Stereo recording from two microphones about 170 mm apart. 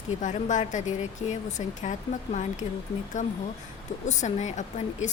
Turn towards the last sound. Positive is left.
turn(degrees=45)  # may be behind; listen again after turning